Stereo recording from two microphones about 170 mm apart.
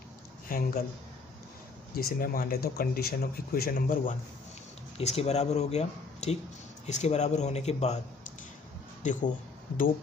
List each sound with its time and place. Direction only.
0.5 s speech: 55° left (ahead or behind)
2.0 s speech: 60° left (ahead or behind)
4.9 s speech: 35° left (ahead or behind)
9.0 s speech: 50° left (ahead or behind)